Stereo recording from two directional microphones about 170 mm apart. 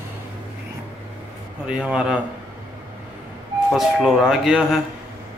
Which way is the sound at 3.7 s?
Centre (ahead or behind).